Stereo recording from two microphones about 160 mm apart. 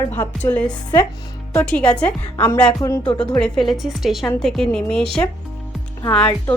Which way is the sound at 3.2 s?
5° left (ahead or behind).